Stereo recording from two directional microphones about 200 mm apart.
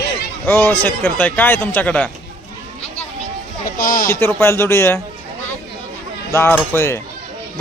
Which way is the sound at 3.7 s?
45° left (ahead or behind).